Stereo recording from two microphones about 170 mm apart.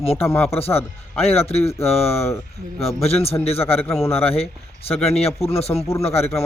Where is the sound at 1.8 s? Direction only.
35° left (ahead or behind).